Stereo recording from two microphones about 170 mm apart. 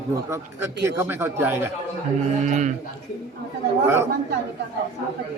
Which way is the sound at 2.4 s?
45° right (ahead or behind).